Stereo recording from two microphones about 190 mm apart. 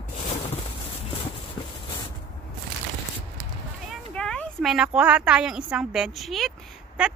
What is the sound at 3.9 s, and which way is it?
Speech, 5° left (ahead or behind).